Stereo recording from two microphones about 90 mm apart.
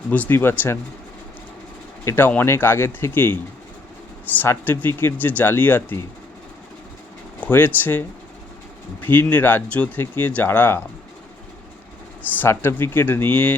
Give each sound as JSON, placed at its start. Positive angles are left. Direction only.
{"t": 0.1, "sound": "speech", "side_deg": 20}
{"t": 2.0, "sound": "speech", "side_deg": 25}
{"t": 4.4, "sound": "speech", "side_deg": 20}
{"t": 7.4, "sound": "speech", "side_deg": 25}
{"t": 12.4, "sound": "speech", "side_deg": 25}